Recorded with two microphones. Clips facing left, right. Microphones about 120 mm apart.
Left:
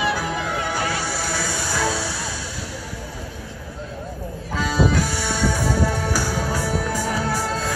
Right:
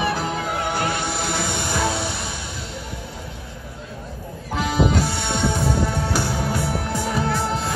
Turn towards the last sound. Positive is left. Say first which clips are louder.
# right 1 dB
turn(degrees=-20)  # may be behind; listen again after turning